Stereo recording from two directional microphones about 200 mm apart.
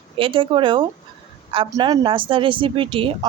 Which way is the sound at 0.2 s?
25° right (ahead or behind).